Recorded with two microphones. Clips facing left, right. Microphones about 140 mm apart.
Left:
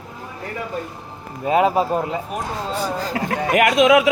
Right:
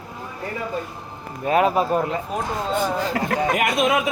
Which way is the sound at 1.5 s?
25° left (ahead or behind).